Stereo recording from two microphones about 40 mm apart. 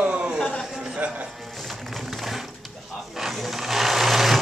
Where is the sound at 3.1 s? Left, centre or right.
Centre.